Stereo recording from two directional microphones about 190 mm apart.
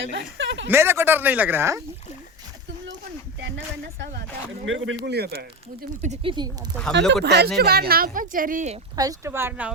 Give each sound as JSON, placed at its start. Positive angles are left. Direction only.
{"t": 0.1, "sound": "speech", "side_deg": -70}
{"t": 0.7, "sound": "speech", "side_deg": -10}
{"t": 4.6, "sound": "speech", "side_deg": -80}
{"t": 6.0, "sound": "speech", "side_deg": -35}
{"t": 7.1, "sound": "speech", "side_deg": -60}
{"t": 9.0, "sound": "speech", "side_deg": -15}